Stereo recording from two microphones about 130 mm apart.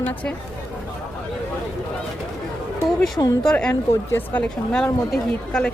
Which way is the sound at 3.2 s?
25° left (ahead or behind).